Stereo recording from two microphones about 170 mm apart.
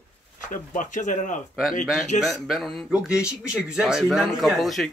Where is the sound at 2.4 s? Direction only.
Centre (ahead or behind).